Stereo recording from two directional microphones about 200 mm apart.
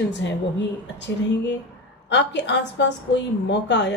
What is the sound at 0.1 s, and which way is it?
Speech, 60° left (ahead or behind).